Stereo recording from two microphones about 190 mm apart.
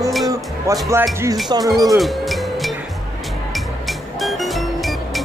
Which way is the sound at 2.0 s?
Centre (ahead or behind).